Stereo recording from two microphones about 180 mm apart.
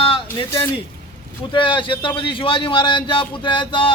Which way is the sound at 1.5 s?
25° left (ahead or behind).